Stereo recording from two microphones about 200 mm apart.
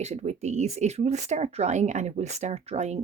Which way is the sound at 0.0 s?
35° right (ahead or behind).